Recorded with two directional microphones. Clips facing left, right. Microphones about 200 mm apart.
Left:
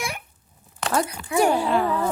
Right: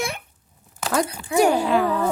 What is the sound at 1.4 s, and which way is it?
Speech, 45° right (ahead or behind).